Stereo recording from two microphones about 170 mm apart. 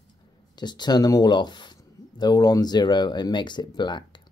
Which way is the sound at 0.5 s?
25° left (ahead or behind).